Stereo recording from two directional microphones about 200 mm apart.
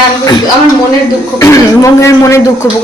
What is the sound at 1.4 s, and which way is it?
Speech, 15° left (ahead or behind).